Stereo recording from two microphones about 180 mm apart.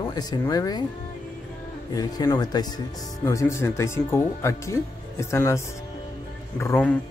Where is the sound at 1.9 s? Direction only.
20° left (ahead or behind).